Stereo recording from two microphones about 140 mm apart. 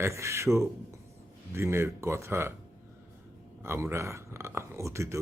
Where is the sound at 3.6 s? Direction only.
20° right (ahead or behind).